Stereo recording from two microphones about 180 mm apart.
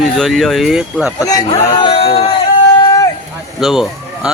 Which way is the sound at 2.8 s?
20° left (ahead or behind).